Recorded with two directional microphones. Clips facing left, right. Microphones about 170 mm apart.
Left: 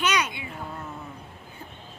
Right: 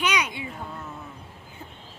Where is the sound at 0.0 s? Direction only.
10° right (ahead or behind).